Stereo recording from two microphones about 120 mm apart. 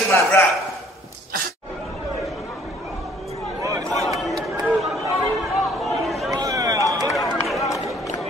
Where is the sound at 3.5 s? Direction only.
25° right (ahead or behind).